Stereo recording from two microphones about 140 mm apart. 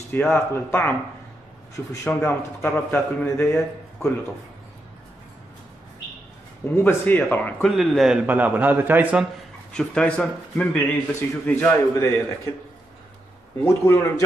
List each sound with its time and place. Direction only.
0.1 s a man's voice: 15° left (ahead or behind)
6.7 s a man's voice: 10° left (ahead or behind)
7.7 s a man's voice: centre (ahead or behind)
8.3 s a man's voice: 10° right (ahead or behind)
9.7 s a man's voice: 5° left (ahead or behind)
13.7 s a man's voice: 20° left (ahead or behind)